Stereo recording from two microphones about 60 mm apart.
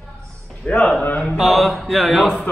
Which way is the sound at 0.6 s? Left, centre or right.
Centre.